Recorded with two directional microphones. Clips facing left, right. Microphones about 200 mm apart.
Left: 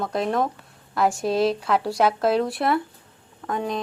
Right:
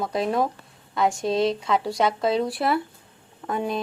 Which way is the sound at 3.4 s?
15° right (ahead or behind).